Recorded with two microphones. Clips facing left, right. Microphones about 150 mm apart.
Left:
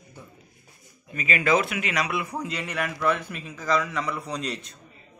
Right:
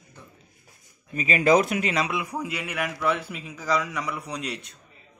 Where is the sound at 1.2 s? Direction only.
35° right (ahead or behind).